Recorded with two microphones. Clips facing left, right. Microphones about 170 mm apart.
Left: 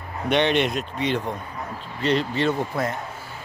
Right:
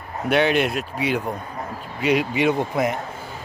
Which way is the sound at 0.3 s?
5° right (ahead or behind).